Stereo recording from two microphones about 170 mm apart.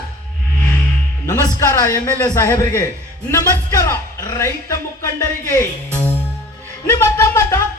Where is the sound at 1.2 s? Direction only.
15° left (ahead or behind).